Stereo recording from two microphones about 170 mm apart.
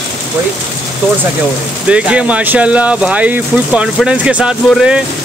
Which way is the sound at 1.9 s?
5° right (ahead or behind).